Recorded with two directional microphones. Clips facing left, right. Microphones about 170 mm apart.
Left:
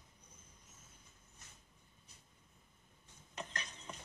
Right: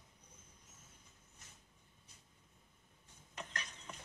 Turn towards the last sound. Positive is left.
turn(degrees=25)  # may be behind; listen again after turning